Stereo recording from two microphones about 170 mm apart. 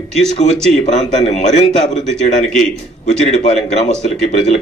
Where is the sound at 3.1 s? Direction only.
45° left (ahead or behind).